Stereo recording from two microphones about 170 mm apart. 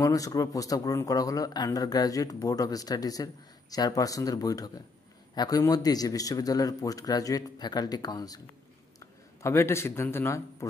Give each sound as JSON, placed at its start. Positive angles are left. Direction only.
{"t": 0.0, "sound": "speech", "side_deg": 20}
{"t": 9.4, "sound": "speech", "side_deg": 15}